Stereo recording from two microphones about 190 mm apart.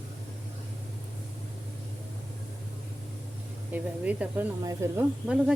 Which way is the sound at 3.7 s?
10° right (ahead or behind).